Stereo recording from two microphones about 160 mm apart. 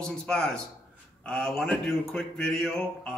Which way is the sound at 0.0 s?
5° left (ahead or behind).